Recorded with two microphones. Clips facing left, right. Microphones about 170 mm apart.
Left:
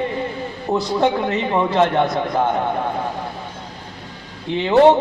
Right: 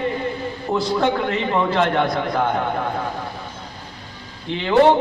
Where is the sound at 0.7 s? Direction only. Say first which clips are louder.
Left 2 dB; 20° left (ahead or behind).